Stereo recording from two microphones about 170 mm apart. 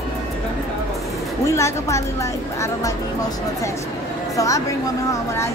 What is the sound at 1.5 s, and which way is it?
Speech, 15° left (ahead or behind).